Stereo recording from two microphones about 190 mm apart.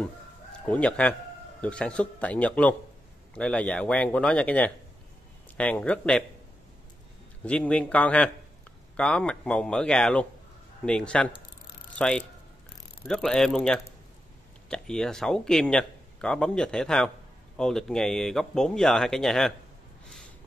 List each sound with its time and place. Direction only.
0.0 s chicken: 5° left (ahead or behind)
1.6 s speech: 5° left (ahead or behind)
7.4 s speech: 5° left (ahead or behind)